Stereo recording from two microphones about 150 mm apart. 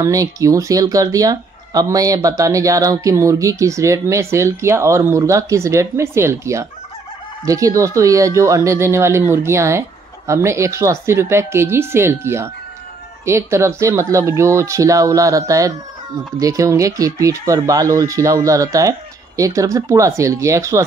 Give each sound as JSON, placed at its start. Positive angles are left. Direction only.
{"t": 0.0, "sound": "speech", "side_deg": -20}